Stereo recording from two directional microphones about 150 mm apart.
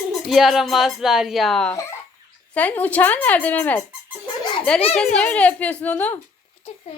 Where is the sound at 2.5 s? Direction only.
10° left (ahead or behind).